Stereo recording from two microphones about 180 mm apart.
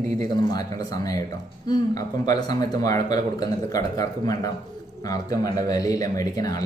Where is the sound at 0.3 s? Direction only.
20° left (ahead or behind).